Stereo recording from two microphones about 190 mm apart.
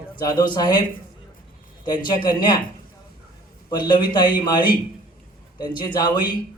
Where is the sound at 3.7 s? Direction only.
25° left (ahead or behind).